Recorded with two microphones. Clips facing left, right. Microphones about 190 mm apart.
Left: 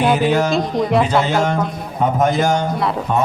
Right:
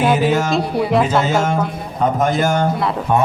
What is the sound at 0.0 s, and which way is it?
Speech, centre (ahead or behind).